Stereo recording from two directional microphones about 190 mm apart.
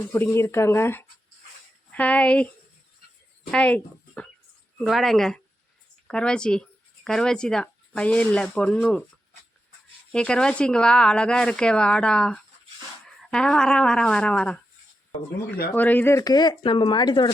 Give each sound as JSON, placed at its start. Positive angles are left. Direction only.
{"t": 0.1, "sound": "speech", "side_deg": 10}
{"t": 3.5, "sound": "speech", "side_deg": 5}
{"t": 10.1, "sound": "speech", "side_deg": 5}
{"t": 15.7, "sound": "speech", "side_deg": 10}